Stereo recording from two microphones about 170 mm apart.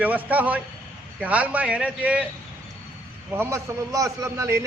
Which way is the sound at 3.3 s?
15° right (ahead or behind).